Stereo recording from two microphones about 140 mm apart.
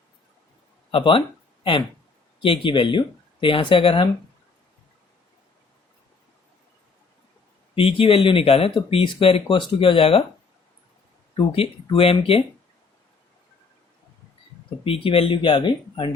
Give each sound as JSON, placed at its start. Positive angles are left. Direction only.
{"t": 0.9, "sound": "speech", "side_deg": 40}
{"t": 2.4, "sound": "speech", "side_deg": 35}
{"t": 7.8, "sound": "speech", "side_deg": 40}
{"t": 11.3, "sound": "speech", "side_deg": 45}
{"t": 14.8, "sound": "speech", "side_deg": 40}